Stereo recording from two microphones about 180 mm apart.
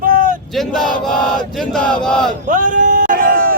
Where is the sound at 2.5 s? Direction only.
45° right (ahead or behind).